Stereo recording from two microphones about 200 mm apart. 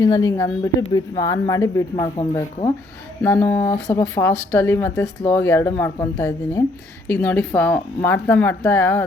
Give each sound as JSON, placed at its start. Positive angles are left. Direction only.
{"t": 0.0, "sound": "speech", "side_deg": 15}
{"t": 2.1, "sound": "speech", "side_deg": 25}
{"t": 3.2, "sound": "speech", "side_deg": 10}
{"t": 3.6, "sound": "speech", "side_deg": 20}